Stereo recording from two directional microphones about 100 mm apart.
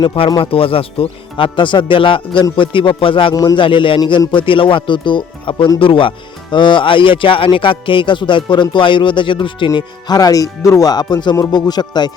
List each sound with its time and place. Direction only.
0.0 s speech: 55° left (ahead or behind)
0.3 s speech: 65° left (ahead or behind)
3.3 s speech: 50° left (ahead or behind)